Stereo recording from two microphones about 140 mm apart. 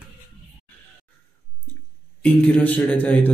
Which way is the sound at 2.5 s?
10° left (ahead or behind).